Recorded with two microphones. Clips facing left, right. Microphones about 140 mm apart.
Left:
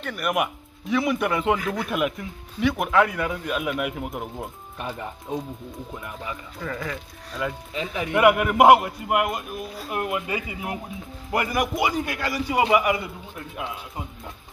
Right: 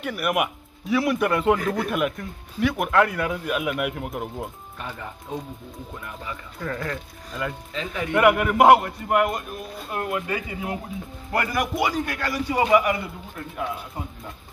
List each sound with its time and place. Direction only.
0.0 s speech: 5° right (ahead or behind)
1.6 s speech: 45° right (ahead or behind)
1.9 s speech: centre (ahead or behind)
4.7 s speech: 20° left (ahead or behind)
6.6 s speech: centre (ahead or behind)
7.7 s a man's voice: 15° left (ahead or behind)